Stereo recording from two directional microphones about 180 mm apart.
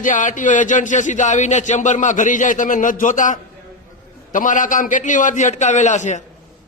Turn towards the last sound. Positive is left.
turn(degrees=40)  # may be behind; listen again after turning